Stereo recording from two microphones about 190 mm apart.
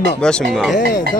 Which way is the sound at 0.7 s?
65° left (ahead or behind).